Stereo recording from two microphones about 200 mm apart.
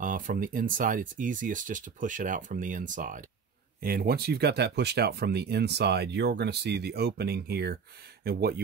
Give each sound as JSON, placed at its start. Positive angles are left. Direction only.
{"t": 0.0, "sound": "speech", "side_deg": -40}